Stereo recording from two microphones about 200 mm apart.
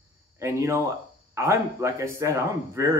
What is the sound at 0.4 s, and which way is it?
Speech, 15° right (ahead or behind).